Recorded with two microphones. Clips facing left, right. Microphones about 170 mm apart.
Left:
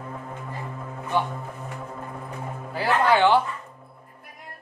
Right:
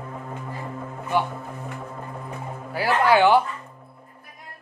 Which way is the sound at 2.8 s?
10° right (ahead or behind).